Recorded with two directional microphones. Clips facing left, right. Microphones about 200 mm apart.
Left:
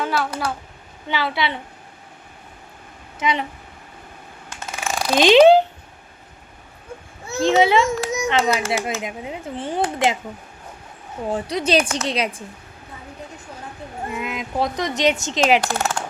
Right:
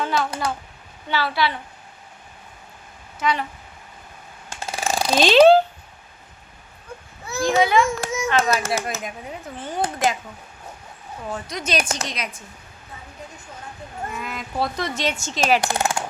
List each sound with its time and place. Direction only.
0.0 s speech: 10° left (ahead or behind)
1.0 s speech: 20° left (ahead or behind)
3.2 s speech: 20° left (ahead or behind)
4.4 s mechanisms: 30° right (ahead or behind)
5.1 s speech: 15° left (ahead or behind)
7.3 s a child's voice: 25° left (ahead or behind)
11.2 s a woman's voice: 30° left (ahead or behind)
14.1 s speech: 20° left (ahead or behind)
15.6 s speech: 15° right (ahead or behind)